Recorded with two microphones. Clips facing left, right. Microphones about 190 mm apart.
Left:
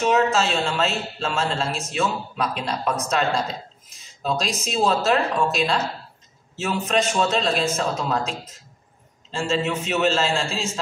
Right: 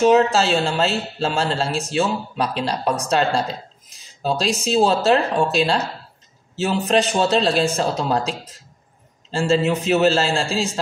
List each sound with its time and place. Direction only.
0.0 s a man's voice: 35° right (ahead or behind)